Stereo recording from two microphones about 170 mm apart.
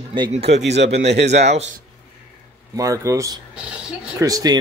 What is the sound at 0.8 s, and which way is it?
Speech, 90° right.